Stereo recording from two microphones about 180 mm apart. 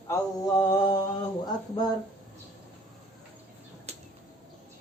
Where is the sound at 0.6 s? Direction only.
25° left (ahead or behind).